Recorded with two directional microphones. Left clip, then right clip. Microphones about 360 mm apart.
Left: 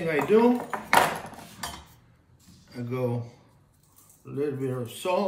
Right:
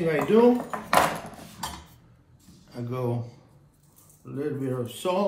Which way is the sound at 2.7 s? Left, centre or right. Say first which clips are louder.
Left 1 dB; centre.